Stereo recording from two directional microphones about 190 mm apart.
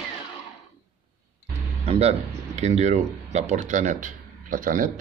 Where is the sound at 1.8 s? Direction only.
35° right (ahead or behind).